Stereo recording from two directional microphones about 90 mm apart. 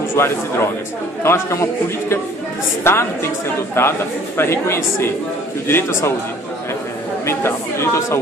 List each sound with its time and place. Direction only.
0.2 s a woman's voice: 25° left (ahead or behind)
7.2 s a woman's voice: 30° left (ahead or behind)